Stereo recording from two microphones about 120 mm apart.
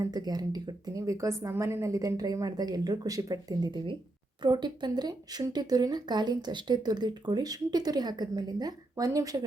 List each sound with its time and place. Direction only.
0.0 s speech: 35° right (ahead or behind)